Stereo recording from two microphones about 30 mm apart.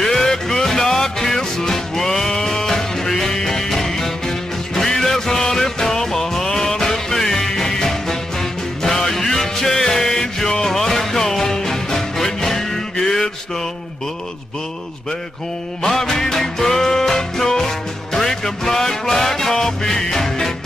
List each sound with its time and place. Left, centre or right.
0.0 s music: centre
15.8 s music: centre